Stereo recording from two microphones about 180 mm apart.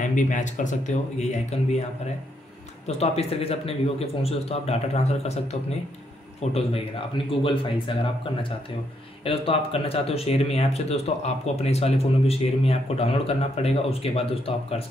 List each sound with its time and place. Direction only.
0.0 s speech: 45° left (ahead or behind)
2.9 s speech: 35° left (ahead or behind)